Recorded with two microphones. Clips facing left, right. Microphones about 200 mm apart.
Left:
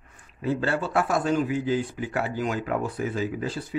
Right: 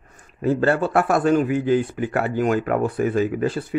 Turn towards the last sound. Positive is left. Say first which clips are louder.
# right 8 dB
turn(degrees=-55)  # may be behind; listen again after turning